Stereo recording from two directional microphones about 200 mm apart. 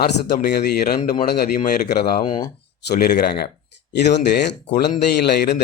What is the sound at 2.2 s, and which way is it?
Speech, 20° left (ahead or behind).